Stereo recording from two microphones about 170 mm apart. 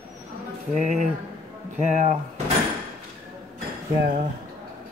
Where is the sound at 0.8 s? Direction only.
45° right (ahead or behind).